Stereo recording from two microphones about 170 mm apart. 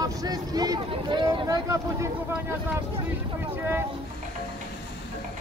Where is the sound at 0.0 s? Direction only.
20° right (ahead or behind).